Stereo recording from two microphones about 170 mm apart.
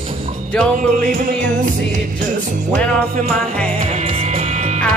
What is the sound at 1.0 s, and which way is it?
Music, 50° right (ahead or behind).